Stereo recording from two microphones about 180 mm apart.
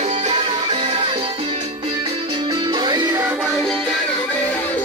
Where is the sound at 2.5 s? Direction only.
25° right (ahead or behind).